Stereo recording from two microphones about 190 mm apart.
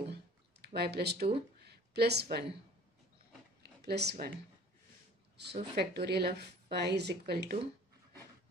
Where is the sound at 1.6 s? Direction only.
60° right (ahead or behind).